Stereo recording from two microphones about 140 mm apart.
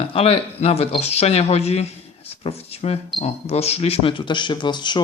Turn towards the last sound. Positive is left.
turn(degrees=35)  # may be behind; listen again after turning